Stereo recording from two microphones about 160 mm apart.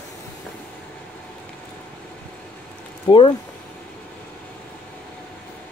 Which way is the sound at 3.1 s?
30° left (ahead or behind).